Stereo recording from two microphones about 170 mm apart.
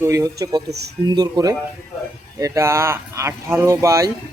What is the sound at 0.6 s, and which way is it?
Speech, 75° right (ahead or behind).